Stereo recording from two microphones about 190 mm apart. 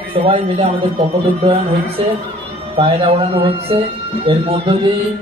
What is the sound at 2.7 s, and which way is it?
Speech, 30° right (ahead or behind).